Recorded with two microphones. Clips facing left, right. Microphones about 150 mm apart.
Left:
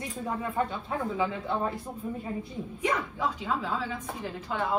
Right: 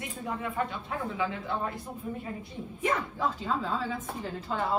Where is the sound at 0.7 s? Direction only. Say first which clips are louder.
Left 3 dB; 30° left (ahead or behind).